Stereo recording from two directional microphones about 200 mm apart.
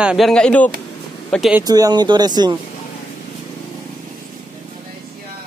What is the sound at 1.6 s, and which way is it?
Speech, 20° right (ahead or behind).